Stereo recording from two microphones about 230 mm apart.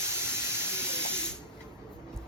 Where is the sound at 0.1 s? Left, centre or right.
Centre.